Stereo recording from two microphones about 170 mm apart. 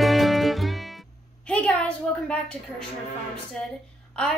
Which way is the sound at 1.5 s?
5° left (ahead or behind).